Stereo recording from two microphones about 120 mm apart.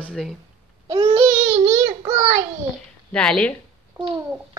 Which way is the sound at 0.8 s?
40° right (ahead or behind).